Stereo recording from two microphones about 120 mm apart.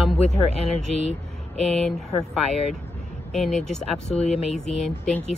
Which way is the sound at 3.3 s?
Centre (ahead or behind).